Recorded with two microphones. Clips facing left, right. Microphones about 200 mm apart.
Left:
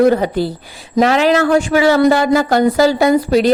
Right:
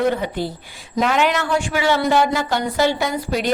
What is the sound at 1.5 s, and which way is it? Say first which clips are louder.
Speech: left 7 dB; 40° left (ahead or behind).